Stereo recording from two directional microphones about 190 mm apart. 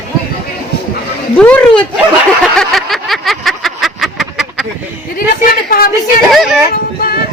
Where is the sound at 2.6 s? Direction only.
Centre (ahead or behind).